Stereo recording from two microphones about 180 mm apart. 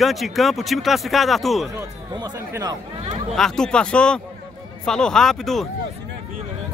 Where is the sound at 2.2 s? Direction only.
20° right (ahead or behind).